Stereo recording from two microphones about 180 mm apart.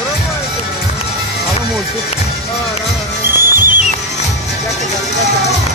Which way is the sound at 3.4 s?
50° right (ahead or behind).